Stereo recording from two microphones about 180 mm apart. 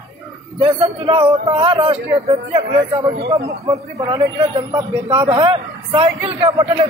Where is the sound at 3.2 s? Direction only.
15° right (ahead or behind).